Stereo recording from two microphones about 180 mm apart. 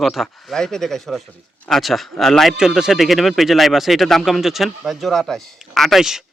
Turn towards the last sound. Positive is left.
turn(degrees=0)  # may be behind; listen again after turning